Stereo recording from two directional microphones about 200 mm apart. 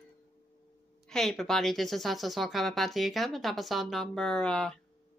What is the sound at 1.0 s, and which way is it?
A woman's voice, centre (ahead or behind).